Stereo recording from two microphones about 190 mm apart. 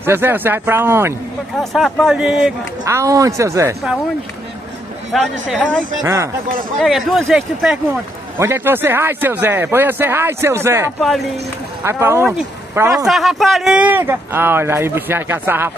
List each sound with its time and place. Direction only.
0.0 s speech: 10° right (ahead or behind)
1.6 s speech: centre (ahead or behind)
2.8 s speech: 15° right (ahead or behind)
5.1 s speech: centre (ahead or behind)
6.0 s speech: 15° right (ahead or behind)
6.8 s speech: centre (ahead or behind)
11.0 s speech: centre (ahead or behind)
11.8 s speech: 15° right (ahead or behind)
12.9 s speech: centre (ahead or behind)